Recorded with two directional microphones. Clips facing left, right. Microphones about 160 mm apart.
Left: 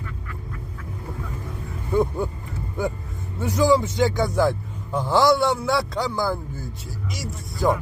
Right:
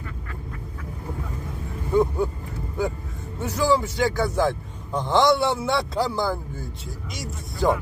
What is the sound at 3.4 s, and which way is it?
A man's voice, 15° left (ahead or behind).